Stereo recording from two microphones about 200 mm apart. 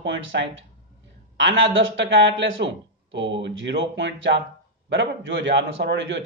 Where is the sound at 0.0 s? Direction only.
70° right (ahead or behind).